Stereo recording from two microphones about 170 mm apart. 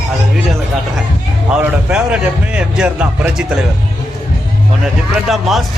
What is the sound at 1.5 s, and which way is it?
A man's voice, 5° right (ahead or behind).